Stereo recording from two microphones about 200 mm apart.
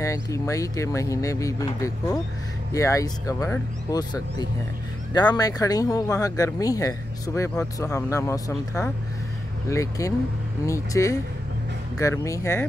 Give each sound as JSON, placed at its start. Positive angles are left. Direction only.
{"t": 0.0, "sound": "speech", "side_deg": 15}